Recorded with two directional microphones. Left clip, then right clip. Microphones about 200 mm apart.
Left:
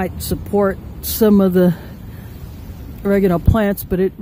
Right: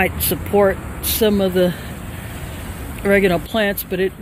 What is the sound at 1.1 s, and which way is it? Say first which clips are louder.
Speech: left 2 dB; 40° left (ahead or behind).